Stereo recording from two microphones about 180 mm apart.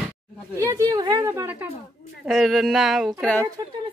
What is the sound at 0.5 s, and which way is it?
Speech, 20° right (ahead or behind).